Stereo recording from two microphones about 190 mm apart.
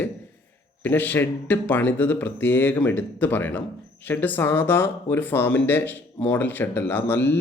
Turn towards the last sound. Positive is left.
turn(degrees=10)  # may be behind; listen again after turning